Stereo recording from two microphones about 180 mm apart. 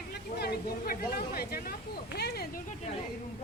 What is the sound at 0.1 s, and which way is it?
A woman's voice, 65° left (ahead or behind).